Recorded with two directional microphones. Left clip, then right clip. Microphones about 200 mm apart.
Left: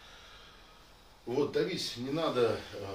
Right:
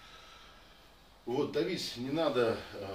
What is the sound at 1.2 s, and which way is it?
Speech, centre (ahead or behind).